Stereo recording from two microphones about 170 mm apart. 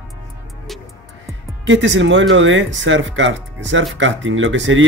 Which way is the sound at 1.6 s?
90° right.